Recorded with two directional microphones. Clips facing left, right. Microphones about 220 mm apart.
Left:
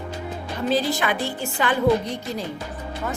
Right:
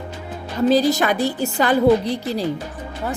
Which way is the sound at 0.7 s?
40° right (ahead or behind).